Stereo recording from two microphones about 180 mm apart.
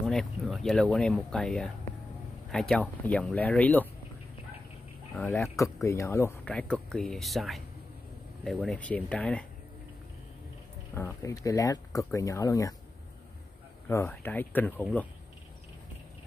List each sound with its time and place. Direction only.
0.0 s speech: 5° left (ahead or behind)
5.2 s speech: 15° left (ahead or behind)
6.4 s speech: 5° left (ahead or behind)
10.9 s speech: 15° left (ahead or behind)
13.8 s speech: 15° left (ahead or behind)